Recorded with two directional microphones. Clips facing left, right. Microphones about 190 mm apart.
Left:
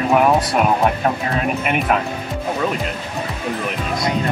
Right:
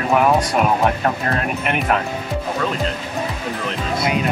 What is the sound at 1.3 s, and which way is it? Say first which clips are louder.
Speech: left 2 dB; 5° left (ahead or behind).